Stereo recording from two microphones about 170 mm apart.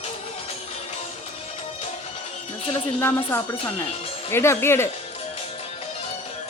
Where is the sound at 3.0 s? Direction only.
15° left (ahead or behind).